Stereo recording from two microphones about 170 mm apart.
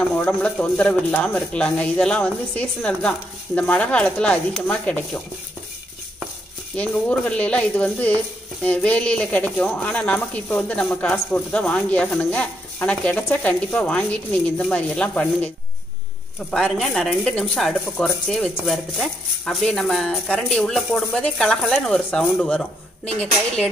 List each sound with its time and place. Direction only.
0.3 s speech: 5° left (ahead or behind)
6.8 s speech: 5° left (ahead or behind)